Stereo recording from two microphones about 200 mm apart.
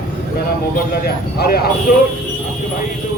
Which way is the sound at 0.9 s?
50° left (ahead or behind).